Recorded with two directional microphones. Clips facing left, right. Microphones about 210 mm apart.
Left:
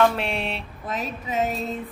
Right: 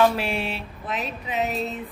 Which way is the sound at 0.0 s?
5° right (ahead or behind).